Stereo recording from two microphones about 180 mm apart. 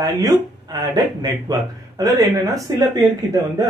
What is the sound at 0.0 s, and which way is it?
Speech, 20° right (ahead or behind).